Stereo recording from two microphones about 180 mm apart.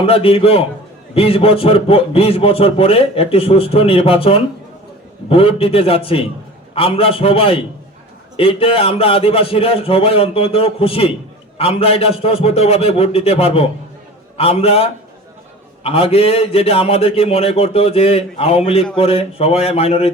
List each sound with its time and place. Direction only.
0.0 s a man's voice: 30° left (ahead or behind)